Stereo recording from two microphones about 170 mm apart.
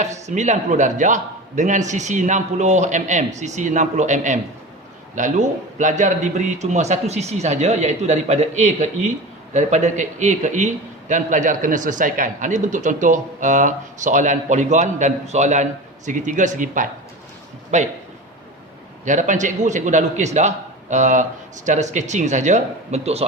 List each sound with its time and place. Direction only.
0.0 s a man's voice: 45° right (ahead or behind)
19.0 s a man's voice: 45° right (ahead or behind)